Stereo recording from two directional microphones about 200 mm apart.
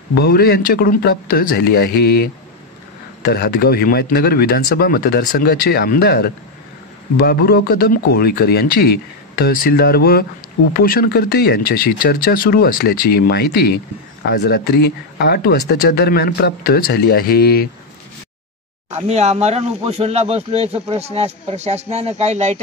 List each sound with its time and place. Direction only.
0.1 s speech: 50° left (ahead or behind)
18.9 s speech: 35° right (ahead or behind)